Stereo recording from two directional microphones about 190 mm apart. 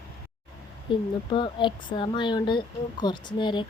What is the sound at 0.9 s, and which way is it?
Speech, 25° left (ahead or behind).